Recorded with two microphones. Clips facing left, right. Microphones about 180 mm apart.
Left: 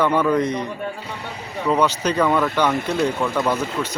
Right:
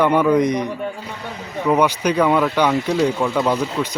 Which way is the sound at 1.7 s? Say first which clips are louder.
Right 2 dB; 10° right (ahead or behind).